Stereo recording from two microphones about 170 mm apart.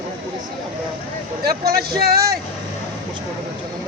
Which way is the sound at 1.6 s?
65° right (ahead or behind).